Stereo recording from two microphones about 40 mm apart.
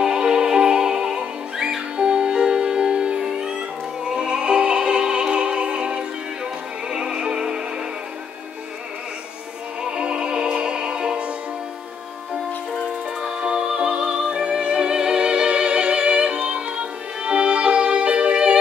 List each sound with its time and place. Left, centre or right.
0.0 s music: right
9.8 s music: right
13.2 s music: right